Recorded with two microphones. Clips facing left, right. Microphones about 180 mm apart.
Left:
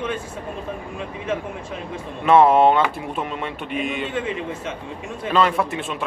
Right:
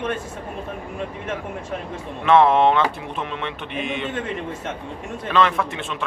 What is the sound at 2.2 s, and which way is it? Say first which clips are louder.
A man's voice: left 1 dB; 5° left (ahead or behind).